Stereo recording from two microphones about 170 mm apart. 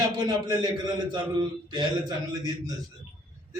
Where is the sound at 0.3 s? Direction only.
25° right (ahead or behind).